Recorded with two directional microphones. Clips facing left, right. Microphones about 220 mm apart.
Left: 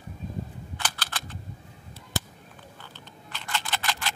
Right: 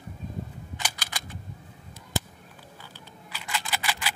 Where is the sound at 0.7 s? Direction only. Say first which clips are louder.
Left 1 dB; 10° right (ahead or behind).